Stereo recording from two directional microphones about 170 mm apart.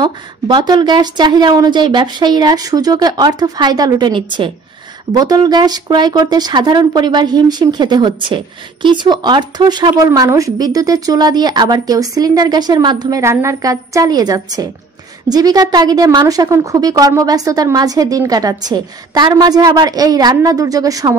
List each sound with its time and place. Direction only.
0.0 s a woman's voice: 25° right (ahead or behind)